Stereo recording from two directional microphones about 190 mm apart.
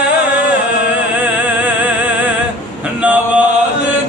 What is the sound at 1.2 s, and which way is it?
Music, 10° right (ahead or behind).